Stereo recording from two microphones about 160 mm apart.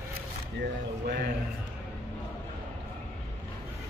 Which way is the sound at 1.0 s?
90° right.